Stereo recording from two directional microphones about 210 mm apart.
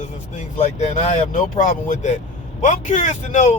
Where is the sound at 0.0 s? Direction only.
35° left (ahead or behind).